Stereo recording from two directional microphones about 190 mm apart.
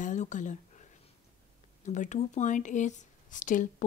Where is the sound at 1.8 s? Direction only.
40° left (ahead or behind).